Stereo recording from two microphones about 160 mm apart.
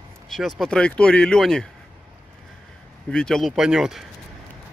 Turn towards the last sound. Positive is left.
turn(degrees=0)  # may be behind; listen again after turning